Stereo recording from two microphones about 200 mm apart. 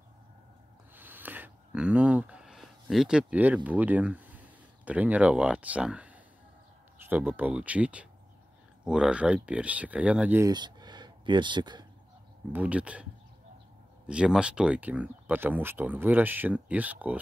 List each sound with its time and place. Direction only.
0.9 s a sound: 10° right (ahead or behind)
4.8 s speech: 5° right (ahead or behind)
10.5 s speech: 20° right (ahead or behind)
12.5 s speech: 5° right (ahead or behind)
14.0 s speech: 5° right (ahead or behind)